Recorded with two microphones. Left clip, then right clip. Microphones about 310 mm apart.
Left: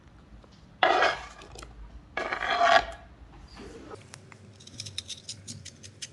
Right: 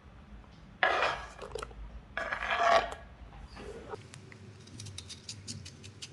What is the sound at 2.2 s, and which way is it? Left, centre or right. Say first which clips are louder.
Filing: left 4 dB; centre.